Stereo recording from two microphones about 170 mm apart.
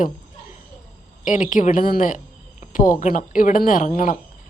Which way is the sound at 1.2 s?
50° left (ahead or behind).